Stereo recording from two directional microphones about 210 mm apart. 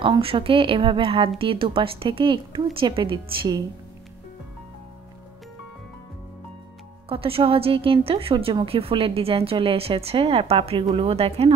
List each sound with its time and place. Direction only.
0.0 s a woman's voice: 25° right (ahead or behind)
7.1 s a woman's voice: 25° right (ahead or behind)